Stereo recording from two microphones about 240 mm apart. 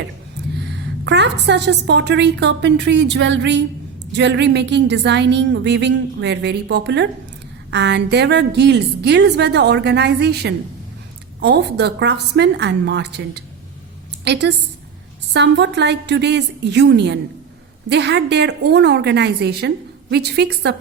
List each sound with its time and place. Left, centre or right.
0.5 s a woman's voice: right